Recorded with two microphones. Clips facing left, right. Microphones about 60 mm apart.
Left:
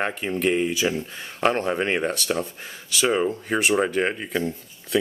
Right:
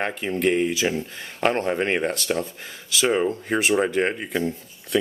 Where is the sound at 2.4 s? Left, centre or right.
Left.